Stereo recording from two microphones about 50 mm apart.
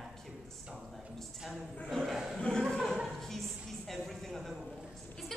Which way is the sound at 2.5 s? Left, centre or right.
Centre.